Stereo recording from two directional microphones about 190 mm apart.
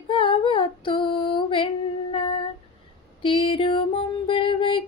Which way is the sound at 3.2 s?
25° left (ahead or behind).